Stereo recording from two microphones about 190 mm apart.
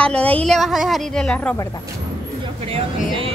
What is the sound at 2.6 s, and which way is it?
Speech, 30° right (ahead or behind).